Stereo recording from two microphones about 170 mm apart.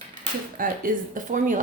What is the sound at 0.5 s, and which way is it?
Speech, 55° right (ahead or behind).